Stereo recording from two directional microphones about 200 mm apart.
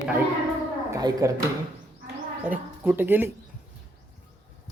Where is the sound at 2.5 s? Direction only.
10° right (ahead or behind).